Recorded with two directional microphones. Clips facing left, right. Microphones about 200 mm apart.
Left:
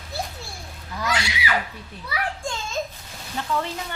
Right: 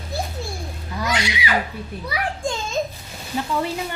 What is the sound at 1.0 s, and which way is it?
Speech, 20° right (ahead or behind).